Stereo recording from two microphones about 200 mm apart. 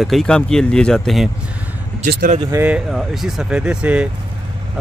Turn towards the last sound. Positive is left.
turn(degrees=-5)  # may be behind; listen again after turning